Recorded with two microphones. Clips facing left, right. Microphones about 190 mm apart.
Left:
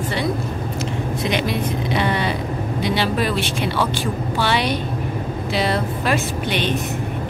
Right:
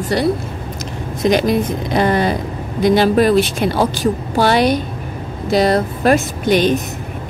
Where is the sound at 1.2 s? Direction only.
45° right (ahead or behind).